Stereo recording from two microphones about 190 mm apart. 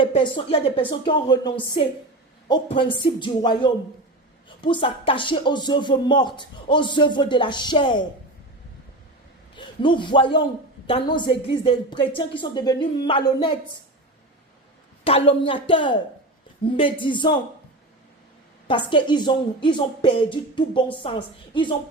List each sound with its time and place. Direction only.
0.0 s speech: 25° left (ahead or behind)
9.6 s a man's voice: 25° left (ahead or behind)
15.0 s speech: 30° left (ahead or behind)
18.7 s speech: 25° left (ahead or behind)